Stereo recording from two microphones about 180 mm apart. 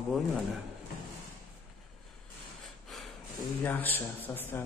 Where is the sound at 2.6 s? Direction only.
Centre (ahead or behind).